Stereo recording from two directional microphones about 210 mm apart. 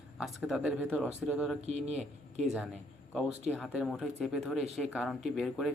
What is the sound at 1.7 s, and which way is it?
Speech, 30° right (ahead or behind).